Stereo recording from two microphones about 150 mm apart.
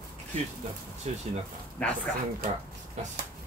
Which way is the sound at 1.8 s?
10° left (ahead or behind).